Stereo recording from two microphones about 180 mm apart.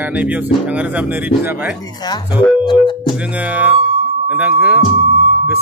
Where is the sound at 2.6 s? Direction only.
25° left (ahead or behind).